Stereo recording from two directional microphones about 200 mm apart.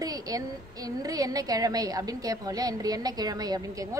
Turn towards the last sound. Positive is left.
turn(degrees=-20)  # may be behind; listen again after turning